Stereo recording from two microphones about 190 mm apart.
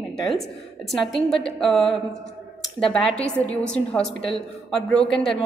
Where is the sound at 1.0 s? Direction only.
Centre (ahead or behind).